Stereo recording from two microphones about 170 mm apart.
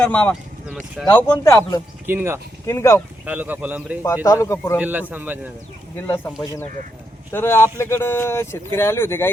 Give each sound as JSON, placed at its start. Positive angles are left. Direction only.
{"t": 0.0, "sound": "speech", "side_deg": 10}
{"t": 2.0, "sound": "a man's voice", "side_deg": -15}
{"t": 2.6, "sound": "speech", "side_deg": 15}
{"t": 3.2, "sound": "a man's voice", "side_deg": -10}
{"t": 4.0, "sound": "speech", "side_deg": 20}
{"t": 4.8, "sound": "a man's voice", "side_deg": -10}
{"t": 6.4, "sound": "speech", "side_deg": 20}